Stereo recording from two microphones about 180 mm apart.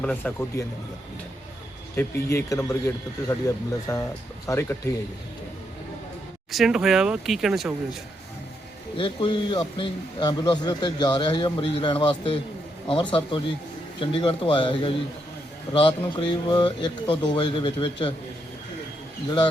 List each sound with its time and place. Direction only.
0.0 s speech: 10° left (ahead or behind)
2.0 s speech: 15° left (ahead or behind)
6.5 s speech: centre (ahead or behind)
9.0 s speech: 30° left (ahead or behind)